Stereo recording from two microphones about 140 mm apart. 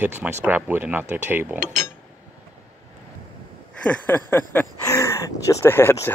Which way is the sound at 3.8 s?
10° left (ahead or behind).